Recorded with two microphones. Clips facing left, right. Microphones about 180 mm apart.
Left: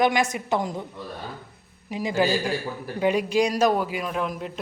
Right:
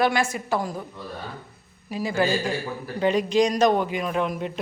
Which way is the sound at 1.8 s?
20° left (ahead or behind).